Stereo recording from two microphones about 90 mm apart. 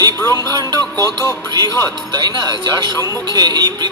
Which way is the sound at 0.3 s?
35° left (ahead or behind).